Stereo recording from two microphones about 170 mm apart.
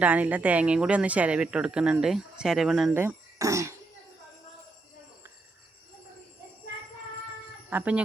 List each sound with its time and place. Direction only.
0.0 s speech: 10° right (ahead or behind)
2.9 s speech: 15° right (ahead or behind)
7.7 s speech: 10° right (ahead or behind)